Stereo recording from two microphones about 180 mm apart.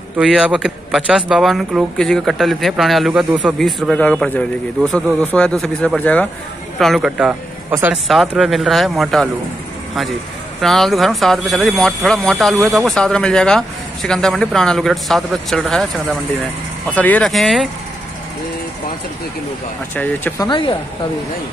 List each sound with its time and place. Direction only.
0.2 s speech: 5° right (ahead or behind)
10.6 s speech: centre (ahead or behind)
20.0 s speech: 10° left (ahead or behind)
20.4 s speech: 25° left (ahead or behind)